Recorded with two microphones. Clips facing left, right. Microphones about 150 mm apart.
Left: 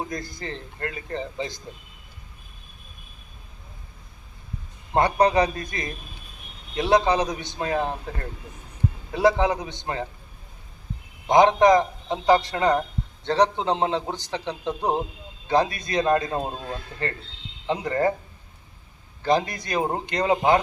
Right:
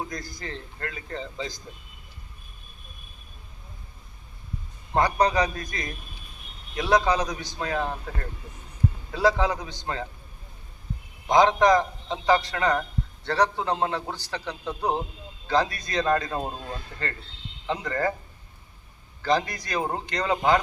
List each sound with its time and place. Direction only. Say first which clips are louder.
0.1 s a man's voice: left 3 dB; 25° left (ahead or behind)
4.9 s a man's voice: left 3 dB; 25° left (ahead or behind)
9.1 s a man's voice: left 3 dB; 20° left (ahead or behind)
11.3 s a man's voice: left 3 dB; 20° left (ahead or behind)
17.7 s a man's voice: left 4 dB; 20° left (ahead or behind)
19.2 s a man's voice: left 2 dB; 25° left (ahead or behind)